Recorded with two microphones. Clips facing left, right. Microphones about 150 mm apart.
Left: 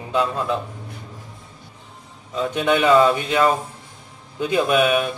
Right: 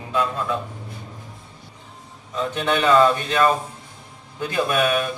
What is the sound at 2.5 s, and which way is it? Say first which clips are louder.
A man's voice: left 2 dB; 15° left (ahead or behind).